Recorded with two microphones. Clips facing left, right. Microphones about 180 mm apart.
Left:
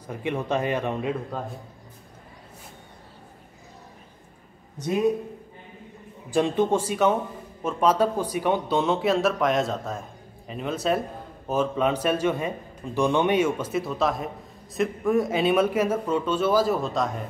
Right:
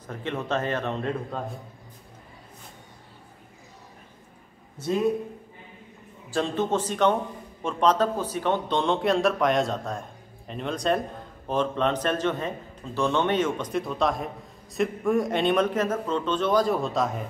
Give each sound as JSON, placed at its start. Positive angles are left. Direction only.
{"t": 0.0, "sound": "speech", "side_deg": 10}
{"t": 4.7, "sound": "speech", "side_deg": 15}
{"t": 6.3, "sound": "speech", "side_deg": 15}